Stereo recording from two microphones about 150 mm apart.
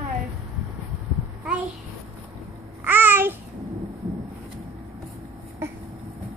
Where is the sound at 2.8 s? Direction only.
15° right (ahead or behind).